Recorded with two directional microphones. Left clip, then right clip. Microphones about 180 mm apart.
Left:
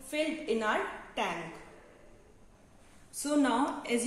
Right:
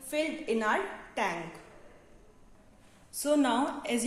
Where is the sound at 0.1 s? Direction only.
40° right (ahead or behind).